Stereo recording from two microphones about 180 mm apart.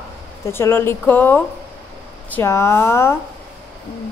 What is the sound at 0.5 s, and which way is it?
Speech, 15° left (ahead or behind).